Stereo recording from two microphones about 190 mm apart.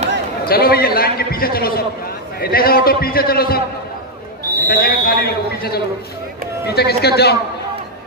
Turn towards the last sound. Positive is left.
turn(degrees=55)  # may be behind; listen again after turning